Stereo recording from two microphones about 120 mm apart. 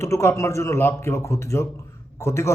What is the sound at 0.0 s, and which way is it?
A man's voice, 25° left (ahead or behind).